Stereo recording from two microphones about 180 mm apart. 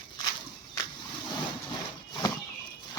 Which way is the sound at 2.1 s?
20° left (ahead or behind).